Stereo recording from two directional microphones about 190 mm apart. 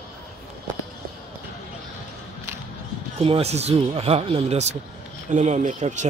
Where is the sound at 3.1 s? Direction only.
30° right (ahead or behind).